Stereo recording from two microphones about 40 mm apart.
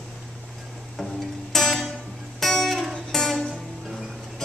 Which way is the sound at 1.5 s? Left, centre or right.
Centre.